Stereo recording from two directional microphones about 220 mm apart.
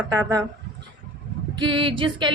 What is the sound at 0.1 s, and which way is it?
Speech, 15° right (ahead or behind).